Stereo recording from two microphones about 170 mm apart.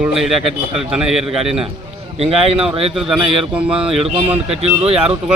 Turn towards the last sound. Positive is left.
turn(degrees=-35)  # may be behind; listen again after turning